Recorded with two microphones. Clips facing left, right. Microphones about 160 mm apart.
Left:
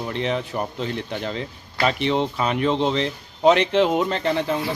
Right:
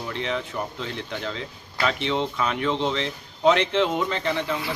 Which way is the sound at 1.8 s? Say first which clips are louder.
Left 4 dB; 35° left (ahead or behind).